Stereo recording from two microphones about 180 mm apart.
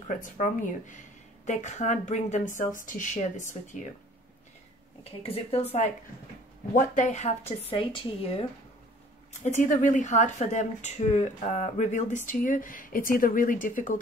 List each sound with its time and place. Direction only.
0.2 s speech: 45° left (ahead or behind)
5.2 s speech: 30° left (ahead or behind)
6.7 s speech: 40° left (ahead or behind)
9.4 s speech: 45° left (ahead or behind)